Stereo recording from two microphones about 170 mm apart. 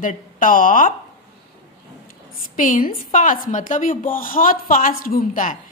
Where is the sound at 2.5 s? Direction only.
50° left (ahead or behind).